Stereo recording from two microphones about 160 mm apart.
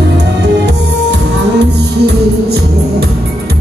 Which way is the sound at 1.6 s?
90° right.